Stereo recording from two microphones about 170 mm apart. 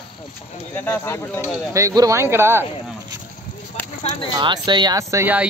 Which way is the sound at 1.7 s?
20° right (ahead or behind).